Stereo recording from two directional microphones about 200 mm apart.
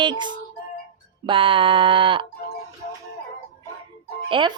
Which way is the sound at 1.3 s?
25° right (ahead or behind).